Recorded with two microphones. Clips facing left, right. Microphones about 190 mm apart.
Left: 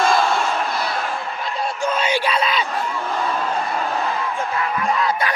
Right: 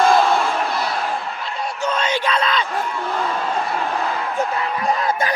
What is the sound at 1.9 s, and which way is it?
Yell, 10° left (ahead or behind).